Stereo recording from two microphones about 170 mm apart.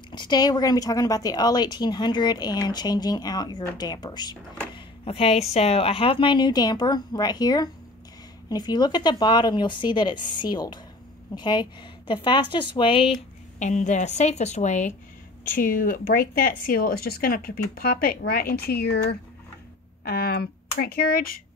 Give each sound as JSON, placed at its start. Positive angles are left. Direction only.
{"t": 0.1, "sound": "speech", "side_deg": 25}